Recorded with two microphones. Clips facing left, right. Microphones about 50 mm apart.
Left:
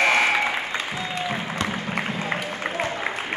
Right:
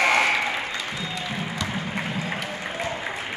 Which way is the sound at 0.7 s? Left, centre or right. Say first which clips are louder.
Left 3 dB; left.